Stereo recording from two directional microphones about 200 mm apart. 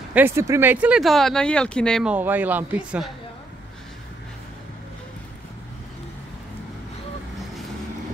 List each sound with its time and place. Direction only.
0.1 s speech: 10° right (ahead or behind)
2.1 s speech: 10° right (ahead or behind)